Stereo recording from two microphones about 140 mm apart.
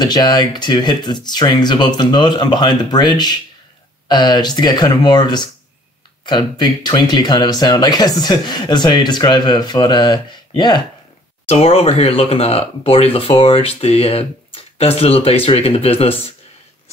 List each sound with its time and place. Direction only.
0.0 s speech: 30° left (ahead or behind)
11.4 s speech: 45° left (ahead or behind)